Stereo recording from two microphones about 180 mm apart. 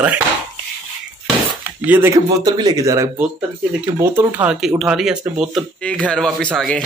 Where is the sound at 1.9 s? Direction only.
15° right (ahead or behind).